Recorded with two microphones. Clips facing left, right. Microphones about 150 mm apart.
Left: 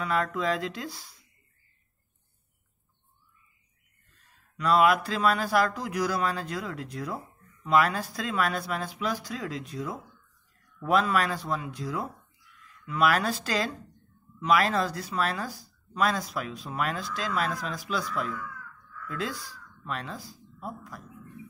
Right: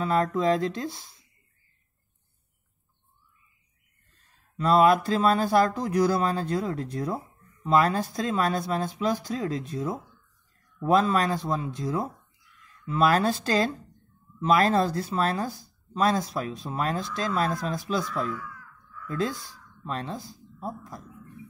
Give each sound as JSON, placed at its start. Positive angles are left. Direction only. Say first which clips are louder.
{"t": 0.0, "sound": "speech", "louder": "right 4 dB", "side_deg": -30}
{"t": 4.6, "sound": "speech", "louder": "right 3 dB", "side_deg": -30}
{"t": 18.1, "sound": "speech", "louder": "right 2 dB", "side_deg": -40}
{"t": 19.9, "sound": "speech", "louder": "right 3 dB", "side_deg": -30}